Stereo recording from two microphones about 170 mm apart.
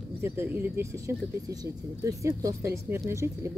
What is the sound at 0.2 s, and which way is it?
Speech, 15° right (ahead or behind).